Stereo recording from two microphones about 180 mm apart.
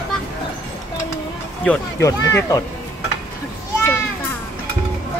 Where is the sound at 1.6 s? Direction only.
10° left (ahead or behind).